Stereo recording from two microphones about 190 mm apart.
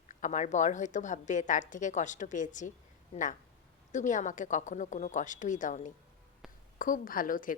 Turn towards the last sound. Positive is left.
turn(degrees=45)  # may be behind; listen again after turning